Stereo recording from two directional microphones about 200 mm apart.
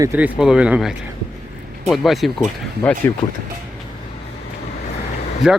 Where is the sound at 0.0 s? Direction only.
10° right (ahead or behind).